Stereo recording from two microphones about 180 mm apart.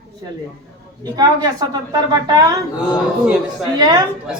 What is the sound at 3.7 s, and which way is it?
Speech, 25° right (ahead or behind).